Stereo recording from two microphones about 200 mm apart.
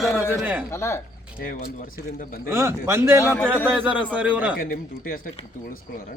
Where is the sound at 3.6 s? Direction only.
10° right (ahead or behind).